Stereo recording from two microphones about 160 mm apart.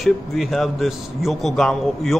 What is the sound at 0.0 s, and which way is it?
A man's voice, centre (ahead or behind).